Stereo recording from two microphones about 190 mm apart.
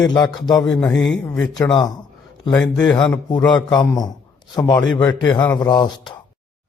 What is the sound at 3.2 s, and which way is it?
A man's voice, 25° left (ahead or behind).